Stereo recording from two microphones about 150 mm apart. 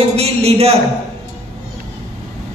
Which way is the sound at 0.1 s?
45° right (ahead or behind).